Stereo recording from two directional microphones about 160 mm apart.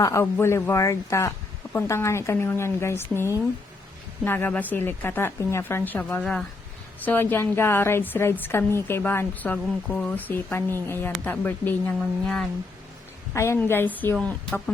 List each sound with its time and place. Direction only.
0.0 s a woman's voice: 20° left (ahead or behind)